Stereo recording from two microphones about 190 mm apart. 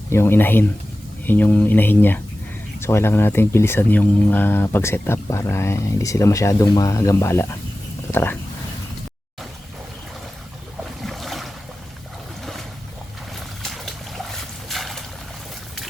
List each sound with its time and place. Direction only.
0.1 s speech: 10° left (ahead or behind)
11.0 s boat: centre (ahead or behind)
13.3 s boat: centre (ahead or behind)